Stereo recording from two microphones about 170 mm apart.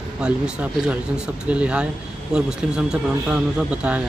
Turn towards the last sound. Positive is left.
turn(degrees=-5)  # may be behind; listen again after turning